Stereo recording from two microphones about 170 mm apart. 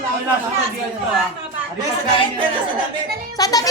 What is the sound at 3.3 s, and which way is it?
Speech, 20° left (ahead or behind).